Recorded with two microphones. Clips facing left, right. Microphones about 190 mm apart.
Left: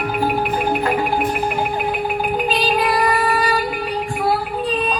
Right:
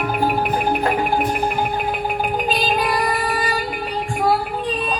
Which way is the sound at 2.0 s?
45° right (ahead or behind).